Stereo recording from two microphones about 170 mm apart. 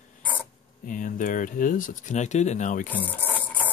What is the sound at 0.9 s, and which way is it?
Speech, 50° left (ahead or behind).